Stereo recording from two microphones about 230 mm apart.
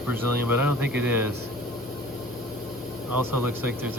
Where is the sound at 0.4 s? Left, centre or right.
Centre.